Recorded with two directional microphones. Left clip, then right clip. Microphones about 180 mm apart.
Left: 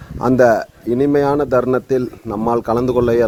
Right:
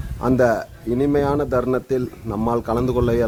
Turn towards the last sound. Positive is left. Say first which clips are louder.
# left 5 dB
turn(degrees=30)  # may be behind; listen again after turning